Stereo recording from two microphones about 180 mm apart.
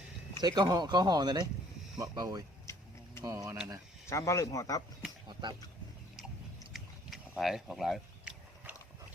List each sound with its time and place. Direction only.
0.3 s speech: 25° right (ahead or behind)
2.7 s vehicle: 15° left (ahead or behind)
3.2 s speech: 20° right (ahead or behind)
4.1 s speech: 15° left (ahead or behind)
5.3 s speech: 25° right (ahead or behind)
6.7 s a sound: centre (ahead or behind)